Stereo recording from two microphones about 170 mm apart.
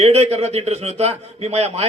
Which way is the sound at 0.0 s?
40° right (ahead or behind).